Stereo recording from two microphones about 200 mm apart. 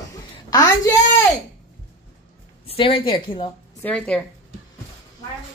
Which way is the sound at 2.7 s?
25° left (ahead or behind).